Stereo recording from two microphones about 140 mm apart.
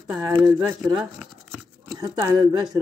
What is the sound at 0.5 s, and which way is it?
Speech, centre (ahead or behind).